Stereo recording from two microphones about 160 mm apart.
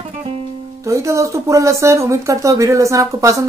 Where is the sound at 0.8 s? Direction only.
20° right (ahead or behind).